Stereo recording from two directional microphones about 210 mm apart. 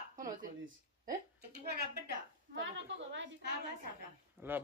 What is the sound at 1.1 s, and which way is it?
Speech, 50° right (ahead or behind).